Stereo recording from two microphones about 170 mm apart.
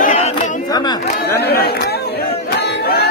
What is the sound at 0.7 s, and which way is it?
Chatter, 25° left (ahead or behind).